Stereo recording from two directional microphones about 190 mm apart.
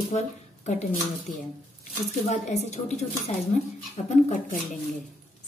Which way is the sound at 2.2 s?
40° left (ahead or behind).